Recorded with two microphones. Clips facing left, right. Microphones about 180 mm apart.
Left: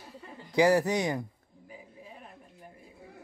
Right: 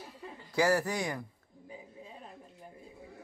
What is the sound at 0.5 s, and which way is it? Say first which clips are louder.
Speech: left 5 dB; 20° left (ahead or behind).